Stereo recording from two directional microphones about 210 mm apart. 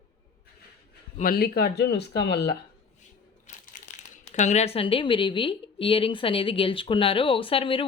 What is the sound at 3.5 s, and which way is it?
Crumpling, 35° left (ahead or behind).